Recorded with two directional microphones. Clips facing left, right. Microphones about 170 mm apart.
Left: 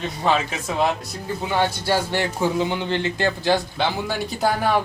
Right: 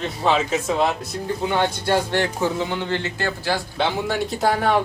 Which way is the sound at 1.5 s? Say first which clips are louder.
Even; 10° left (ahead or behind).